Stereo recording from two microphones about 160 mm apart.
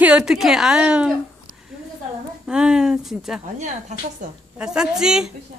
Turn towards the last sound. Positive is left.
turn(degrees=-5)  # may be behind; listen again after turning